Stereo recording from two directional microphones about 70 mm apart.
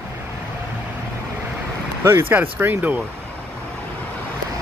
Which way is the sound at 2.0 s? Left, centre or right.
Right.